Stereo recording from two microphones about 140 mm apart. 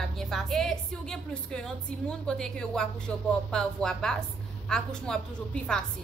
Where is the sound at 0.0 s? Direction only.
Centre (ahead or behind).